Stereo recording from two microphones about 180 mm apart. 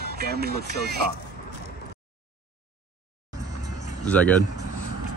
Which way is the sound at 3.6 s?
40° left (ahead or behind).